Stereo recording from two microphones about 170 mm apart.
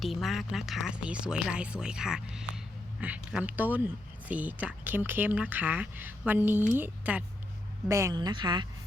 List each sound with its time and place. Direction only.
0.0 s speech: centre (ahead or behind); by 8.6 s 25° right (ahead or behind)